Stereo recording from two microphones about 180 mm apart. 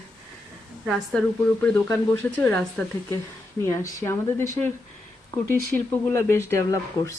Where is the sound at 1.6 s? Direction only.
10° left (ahead or behind).